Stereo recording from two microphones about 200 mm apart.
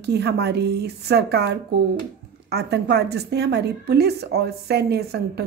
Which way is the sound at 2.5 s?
55° right (ahead or behind).